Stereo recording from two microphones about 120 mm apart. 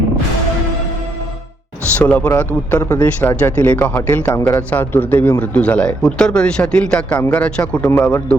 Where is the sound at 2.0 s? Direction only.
10° left (ahead or behind).